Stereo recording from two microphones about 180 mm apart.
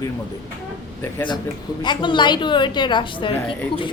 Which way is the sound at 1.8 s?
25° left (ahead or behind).